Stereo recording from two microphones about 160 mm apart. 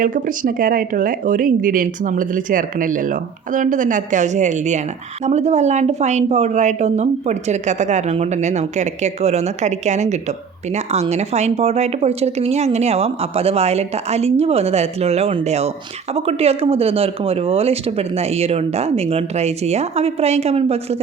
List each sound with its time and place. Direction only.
0.0 s a woman's voice: 55° right (ahead or behind); by 20.7 s 40° right (ahead or behind)